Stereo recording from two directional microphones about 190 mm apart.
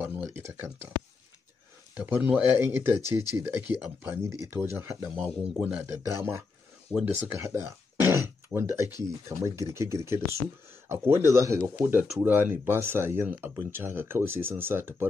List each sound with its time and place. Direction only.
0.0 s speech: 10° right (ahead or behind)
2.0 s speech: 10° right (ahead or behind)
3.0 s speech: 20° left (ahead or behind)
3.7 s speech: 10° right (ahead or behind)